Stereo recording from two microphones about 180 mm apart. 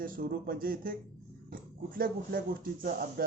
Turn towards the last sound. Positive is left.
turn(degrees=-55)  # may be behind; listen again after turning